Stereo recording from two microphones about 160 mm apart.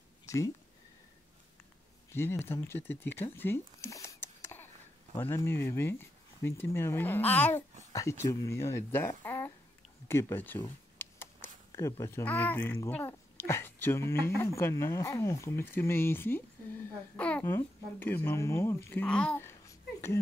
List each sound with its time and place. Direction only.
2.1 s speech: 15° left (ahead or behind)
11.0 s a sound: 15° left (ahead or behind)
12.8 s a child's voice: 15° left (ahead or behind)